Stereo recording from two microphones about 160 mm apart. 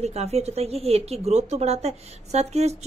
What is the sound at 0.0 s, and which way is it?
Speech, 40° right (ahead or behind).